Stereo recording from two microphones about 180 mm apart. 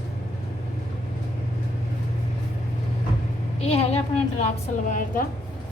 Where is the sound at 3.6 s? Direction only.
35° left (ahead or behind).